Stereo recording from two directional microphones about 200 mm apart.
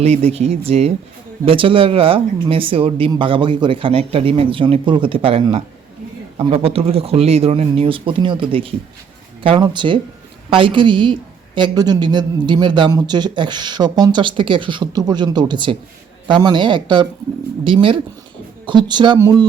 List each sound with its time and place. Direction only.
0.0 s a woman's voice: 30° right (ahead or behind)